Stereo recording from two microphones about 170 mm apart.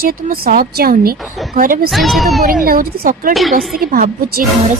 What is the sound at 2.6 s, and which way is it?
Speech, 60° right (ahead or behind).